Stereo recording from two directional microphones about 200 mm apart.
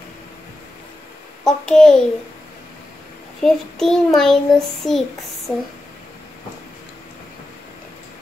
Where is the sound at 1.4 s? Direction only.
5° left (ahead or behind).